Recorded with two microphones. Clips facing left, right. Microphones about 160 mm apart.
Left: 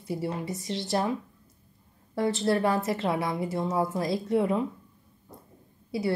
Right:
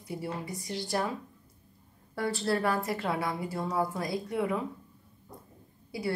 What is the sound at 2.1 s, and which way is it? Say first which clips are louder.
A woman's voice: left 4 dB; 25° left (ahead or behind).